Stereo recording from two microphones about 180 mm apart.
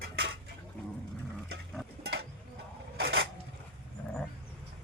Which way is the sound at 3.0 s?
65° right (ahead or behind).